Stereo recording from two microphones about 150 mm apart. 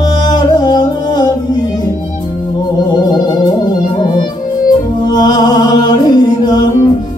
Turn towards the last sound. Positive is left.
turn(degrees=25)  # may be behind; listen again after turning